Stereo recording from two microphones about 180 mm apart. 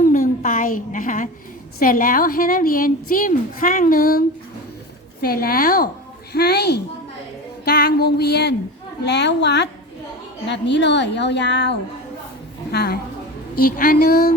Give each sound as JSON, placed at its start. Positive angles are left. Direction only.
{"t": 0.0, "sound": "a sound", "side_deg": 50}
{"t": 1.8, "sound": "a woman's voice", "side_deg": 50}
{"t": 5.2, "sound": "music", "side_deg": 55}
{"t": 9.0, "sound": "a woman's voice", "side_deg": 70}
{"t": 12.7, "sound": "music", "side_deg": 60}